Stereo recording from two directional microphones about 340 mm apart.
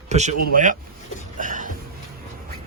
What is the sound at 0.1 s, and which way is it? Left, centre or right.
Speech, centre.